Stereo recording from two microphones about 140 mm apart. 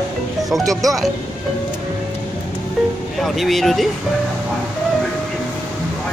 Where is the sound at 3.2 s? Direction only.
Centre (ahead or behind).